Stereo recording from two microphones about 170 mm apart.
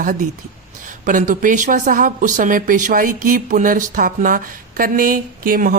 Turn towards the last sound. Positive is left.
turn(degrees=-55)  # may be behind; listen again after turning